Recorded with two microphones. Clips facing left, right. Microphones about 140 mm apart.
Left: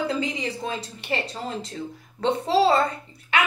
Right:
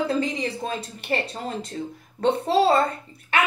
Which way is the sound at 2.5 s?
55° right (ahead or behind).